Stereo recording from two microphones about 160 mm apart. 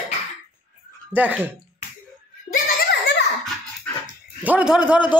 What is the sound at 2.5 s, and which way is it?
Giggle, 80° left.